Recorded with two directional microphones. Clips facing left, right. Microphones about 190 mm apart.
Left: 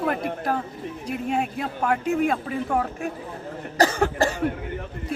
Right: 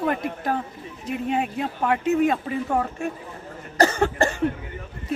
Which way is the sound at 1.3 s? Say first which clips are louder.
Right 1 dB; centre (ahead or behind).